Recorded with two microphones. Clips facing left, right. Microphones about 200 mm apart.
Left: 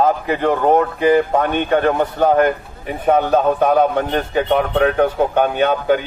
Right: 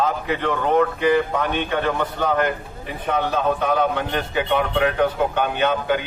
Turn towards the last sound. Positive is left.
turn(degrees=55)  # may be behind; listen again after turning